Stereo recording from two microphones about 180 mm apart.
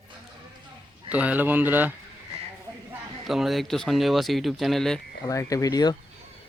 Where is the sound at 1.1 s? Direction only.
10° right (ahead or behind).